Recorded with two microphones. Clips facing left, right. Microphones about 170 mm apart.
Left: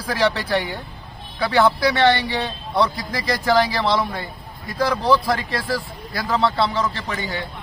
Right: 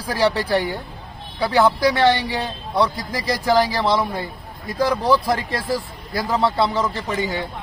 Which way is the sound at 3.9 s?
15° right (ahead or behind).